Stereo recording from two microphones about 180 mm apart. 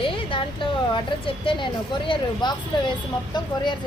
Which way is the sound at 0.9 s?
30° left (ahead or behind).